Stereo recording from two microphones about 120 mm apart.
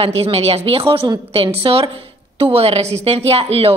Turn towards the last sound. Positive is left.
turn(degrees=-55)  # may be behind; listen again after turning